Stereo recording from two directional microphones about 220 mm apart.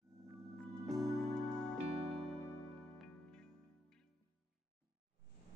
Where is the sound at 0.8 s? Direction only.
Centre (ahead or behind).